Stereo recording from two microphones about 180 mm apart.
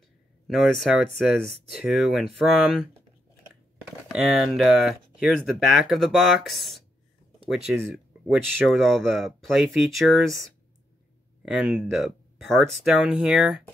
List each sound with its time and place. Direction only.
0.5 s speech: centre (ahead or behind)
11.4 s speech: 5° right (ahead or behind)